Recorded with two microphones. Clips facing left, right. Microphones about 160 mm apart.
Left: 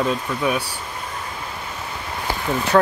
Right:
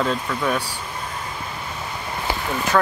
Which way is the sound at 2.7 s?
30° left (ahead or behind).